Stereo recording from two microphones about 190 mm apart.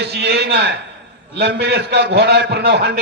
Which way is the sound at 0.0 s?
60° right (ahead or behind).